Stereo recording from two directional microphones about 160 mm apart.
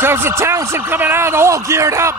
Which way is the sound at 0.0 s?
15° right (ahead or behind).